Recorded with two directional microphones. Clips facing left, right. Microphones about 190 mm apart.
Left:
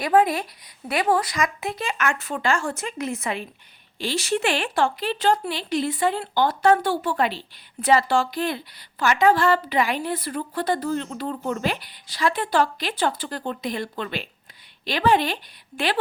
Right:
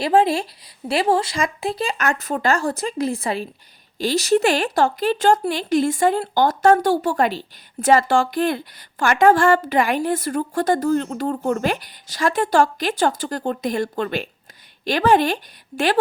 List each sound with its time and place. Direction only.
0.0 s a woman's voice: 30° right (ahead or behind); by 15.4 s 45° right (ahead or behind)